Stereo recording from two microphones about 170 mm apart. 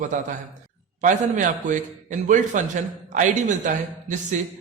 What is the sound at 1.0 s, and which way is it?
A man's voice, 50° right (ahead or behind).